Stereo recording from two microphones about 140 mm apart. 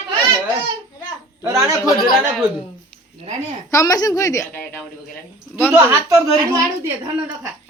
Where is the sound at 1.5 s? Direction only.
25° right (ahead or behind).